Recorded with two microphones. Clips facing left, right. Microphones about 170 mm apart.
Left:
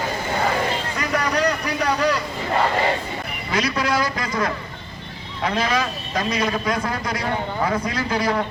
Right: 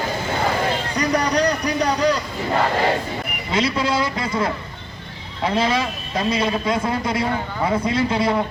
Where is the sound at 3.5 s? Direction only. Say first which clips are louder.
Right 1 dB; 25° right (ahead or behind).